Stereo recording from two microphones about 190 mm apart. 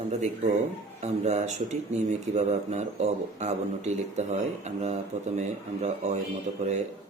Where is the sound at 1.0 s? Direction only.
35° right (ahead or behind).